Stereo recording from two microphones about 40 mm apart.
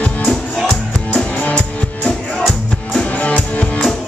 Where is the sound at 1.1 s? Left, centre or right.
Left.